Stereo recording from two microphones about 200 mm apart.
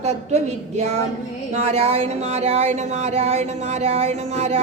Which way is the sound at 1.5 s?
35° right (ahead or behind).